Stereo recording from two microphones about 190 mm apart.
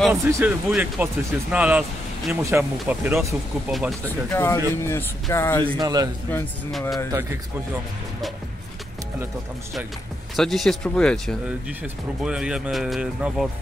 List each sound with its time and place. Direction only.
0.1 s speech: 10° right (ahead or behind)
4.3 s a sound: 15° left (ahead or behind)
5.8 s a man's voice: 20° right (ahead or behind)
6.3 s a sound: 10° left (ahead or behind)
7.1 s speech: 15° right (ahead or behind)
10.3 s speech: centre (ahead or behind)